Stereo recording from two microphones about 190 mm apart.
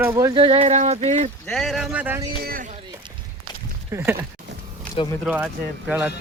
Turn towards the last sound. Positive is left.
turn(degrees=-5)  # may be behind; listen again after turning